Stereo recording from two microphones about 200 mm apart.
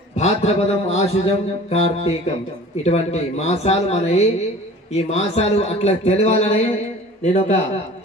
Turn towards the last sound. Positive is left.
turn(degrees=30)  # may be behind; listen again after turning